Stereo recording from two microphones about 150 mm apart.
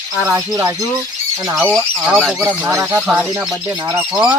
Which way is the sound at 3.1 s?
5° right (ahead or behind).